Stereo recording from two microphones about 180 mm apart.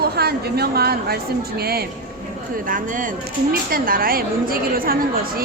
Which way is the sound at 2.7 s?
50° right (ahead or behind).